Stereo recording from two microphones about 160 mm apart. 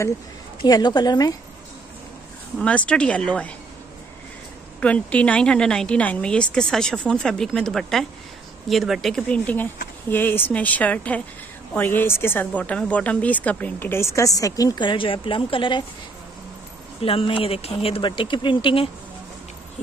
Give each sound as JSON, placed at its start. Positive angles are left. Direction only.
{"t": 0.7, "sound": "speech", "side_deg": 25}
{"t": 2.6, "sound": "speech", "side_deg": 10}
{"t": 4.7, "sound": "a woman's voice", "side_deg": 10}
{"t": 17.0, "sound": "speech", "side_deg": 35}